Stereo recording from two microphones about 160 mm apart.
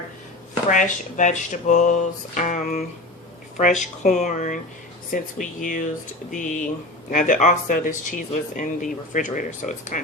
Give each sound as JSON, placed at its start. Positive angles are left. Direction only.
{"t": 0.7, "sound": "speech", "side_deg": 55}